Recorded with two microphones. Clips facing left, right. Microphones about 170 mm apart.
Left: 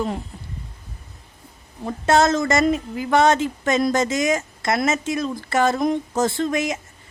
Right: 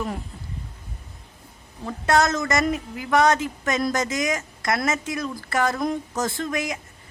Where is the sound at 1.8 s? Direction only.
25° left (ahead or behind).